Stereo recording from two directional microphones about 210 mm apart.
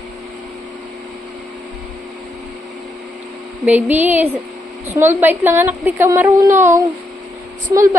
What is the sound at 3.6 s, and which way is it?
A woman's voice, 10° right (ahead or behind).